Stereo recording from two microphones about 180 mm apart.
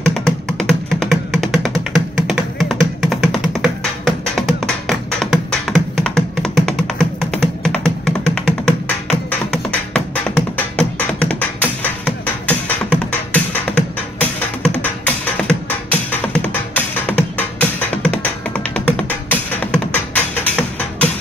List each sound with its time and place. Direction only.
0.0 s music: 5° left (ahead or behind)
12.4 s beatboxing: 10° left (ahead or behind)
14.8 s music: 5° left (ahead or behind)